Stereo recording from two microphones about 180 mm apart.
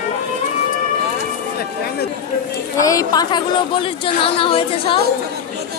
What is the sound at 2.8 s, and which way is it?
A woman's voice, 20° left (ahead or behind).